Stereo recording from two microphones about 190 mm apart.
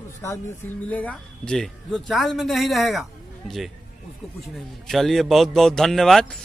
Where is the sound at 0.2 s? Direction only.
15° left (ahead or behind); by 3.7 s centre (ahead or behind).